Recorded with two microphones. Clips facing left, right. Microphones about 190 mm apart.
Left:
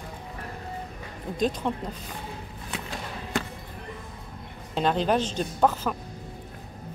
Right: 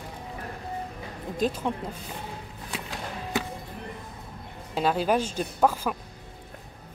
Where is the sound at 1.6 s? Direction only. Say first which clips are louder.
Left 1 dB; 5° right (ahead or behind).